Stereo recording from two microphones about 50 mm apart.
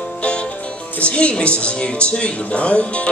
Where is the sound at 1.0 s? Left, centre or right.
Left.